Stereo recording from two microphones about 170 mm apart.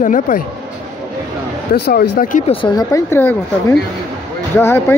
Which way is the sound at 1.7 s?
65° left (ahead or behind).